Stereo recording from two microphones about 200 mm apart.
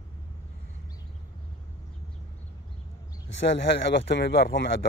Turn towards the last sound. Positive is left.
turn(degrees=55)  # may be behind; listen again after turning